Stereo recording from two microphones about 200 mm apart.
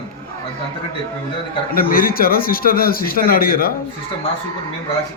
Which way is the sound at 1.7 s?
45° left (ahead or behind).